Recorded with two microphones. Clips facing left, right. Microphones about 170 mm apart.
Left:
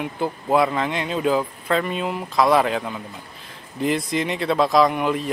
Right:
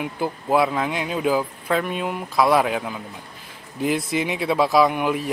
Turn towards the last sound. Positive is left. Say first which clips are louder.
# even
turn(degrees=-5)  # may be behind; listen again after turning